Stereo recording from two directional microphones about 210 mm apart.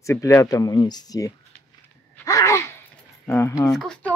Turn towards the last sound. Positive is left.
turn(degrees=5)  # may be behind; listen again after turning